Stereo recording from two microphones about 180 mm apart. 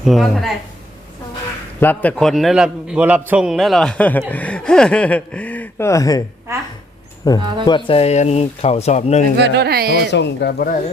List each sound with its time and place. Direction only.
0.0 s a man's voice: centre (ahead or behind)
1.8 s a man's voice: 10° left (ahead or behind)
7.3 s speech: 20° left (ahead or behind); by 9.2 s 40° left (ahead or behind)
9.4 s speech: 65° right (ahead or behind)
10.1 s speech: 75° left (ahead or behind)